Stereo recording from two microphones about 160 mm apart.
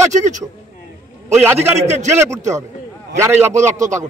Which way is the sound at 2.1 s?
20° right (ahead or behind).